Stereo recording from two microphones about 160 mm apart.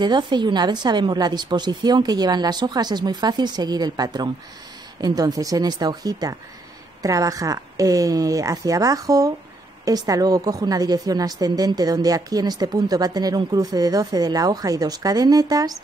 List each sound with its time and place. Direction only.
0.0 s a woman's voice: 25° right (ahead or behind)